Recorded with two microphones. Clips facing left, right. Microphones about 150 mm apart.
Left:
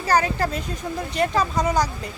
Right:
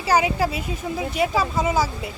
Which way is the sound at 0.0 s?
10° right (ahead or behind).